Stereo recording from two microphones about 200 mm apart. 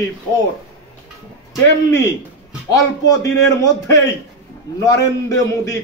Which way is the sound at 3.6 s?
15° left (ahead or behind).